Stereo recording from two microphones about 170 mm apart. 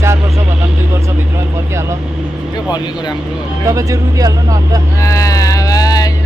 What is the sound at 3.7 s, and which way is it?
Speech, 20° right (ahead or behind).